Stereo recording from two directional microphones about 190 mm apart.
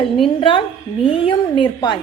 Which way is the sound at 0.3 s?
25° left (ahead or behind).